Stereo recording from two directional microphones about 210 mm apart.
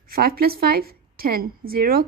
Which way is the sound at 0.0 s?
45° right (ahead or behind).